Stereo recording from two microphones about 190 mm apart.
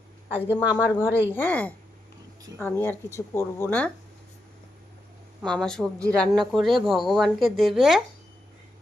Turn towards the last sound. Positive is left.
turn(degrees=0)  # may be behind; listen again after turning